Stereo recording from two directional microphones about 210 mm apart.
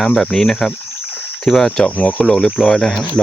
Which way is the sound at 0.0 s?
5° left (ahead or behind).